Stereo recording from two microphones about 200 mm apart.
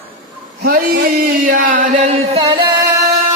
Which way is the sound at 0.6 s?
50° right (ahead or behind).